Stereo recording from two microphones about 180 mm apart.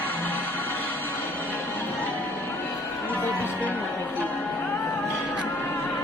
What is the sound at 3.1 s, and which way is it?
Music, 10° left (ahead or behind).